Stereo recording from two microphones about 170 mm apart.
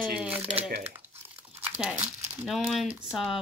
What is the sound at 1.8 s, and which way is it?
Speech, 5° right (ahead or behind).